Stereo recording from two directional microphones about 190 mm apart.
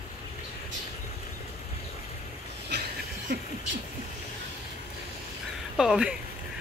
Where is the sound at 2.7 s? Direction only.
60° right (ahead or behind).